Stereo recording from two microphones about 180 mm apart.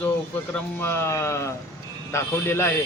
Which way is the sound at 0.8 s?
10° left (ahead or behind).